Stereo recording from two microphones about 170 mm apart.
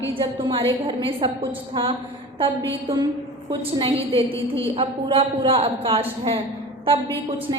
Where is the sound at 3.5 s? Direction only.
35° right (ahead or behind).